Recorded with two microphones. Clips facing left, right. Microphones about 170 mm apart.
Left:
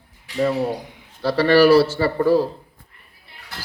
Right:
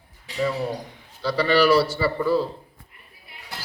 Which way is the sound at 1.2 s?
60° left (ahead or behind).